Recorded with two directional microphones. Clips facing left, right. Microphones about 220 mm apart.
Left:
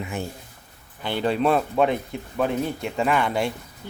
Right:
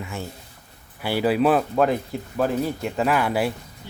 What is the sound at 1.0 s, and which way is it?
Speech, 5° right (ahead or behind).